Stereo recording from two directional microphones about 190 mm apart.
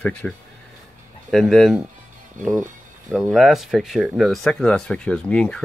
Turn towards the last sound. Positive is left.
turn(degrees=5)  # may be behind; listen again after turning